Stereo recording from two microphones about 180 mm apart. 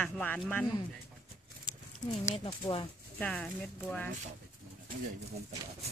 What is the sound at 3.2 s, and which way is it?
Speech, 5° left (ahead or behind).